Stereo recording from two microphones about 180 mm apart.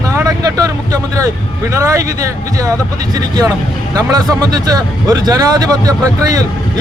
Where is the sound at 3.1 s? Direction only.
20° right (ahead or behind).